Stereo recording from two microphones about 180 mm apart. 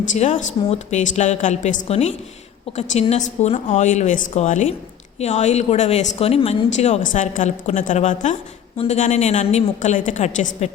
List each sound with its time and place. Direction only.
0.1 s speech: 45° left (ahead or behind)